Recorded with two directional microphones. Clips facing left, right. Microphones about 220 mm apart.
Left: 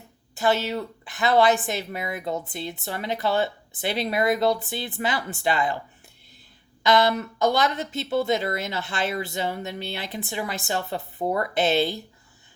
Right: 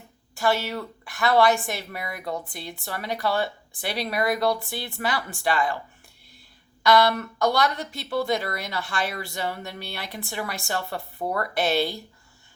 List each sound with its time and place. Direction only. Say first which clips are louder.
0.3 s speech: left 1 dB; 20° left (ahead or behind)
6.8 s speech: even; 20° left (ahead or behind)